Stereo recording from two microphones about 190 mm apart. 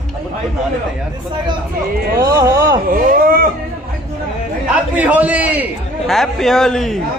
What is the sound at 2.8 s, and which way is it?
Speech, 50° right (ahead or behind).